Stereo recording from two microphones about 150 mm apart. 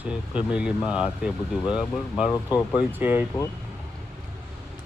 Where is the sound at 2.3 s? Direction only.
20° left (ahead or behind).